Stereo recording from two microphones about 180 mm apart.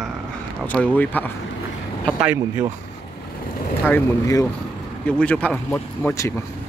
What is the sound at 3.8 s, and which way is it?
Speech, 15° left (ahead or behind).